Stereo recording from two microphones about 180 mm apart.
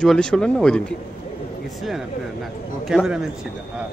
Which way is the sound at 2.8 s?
Centre (ahead or behind).